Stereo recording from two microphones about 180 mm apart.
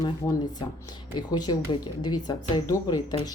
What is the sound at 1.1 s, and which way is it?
Speech, 25° left (ahead or behind).